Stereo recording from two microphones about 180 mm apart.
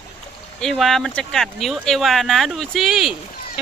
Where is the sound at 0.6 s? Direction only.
Centre (ahead or behind).